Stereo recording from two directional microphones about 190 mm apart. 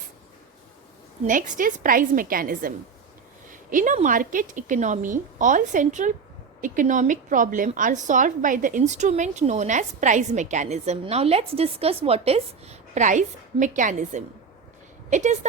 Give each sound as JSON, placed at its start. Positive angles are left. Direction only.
{"t": 1.2, "sound": "a woman's voice", "side_deg": -40}